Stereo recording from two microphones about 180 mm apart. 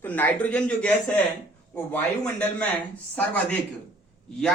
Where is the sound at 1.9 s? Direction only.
5° left (ahead or behind).